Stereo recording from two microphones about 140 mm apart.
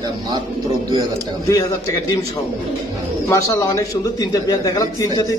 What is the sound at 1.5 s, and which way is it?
Speech, 25° left (ahead or behind).